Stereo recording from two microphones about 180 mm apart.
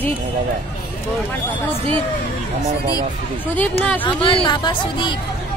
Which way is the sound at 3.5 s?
10° left (ahead or behind).